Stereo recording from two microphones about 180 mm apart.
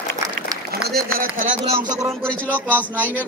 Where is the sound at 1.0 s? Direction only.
55° right (ahead or behind).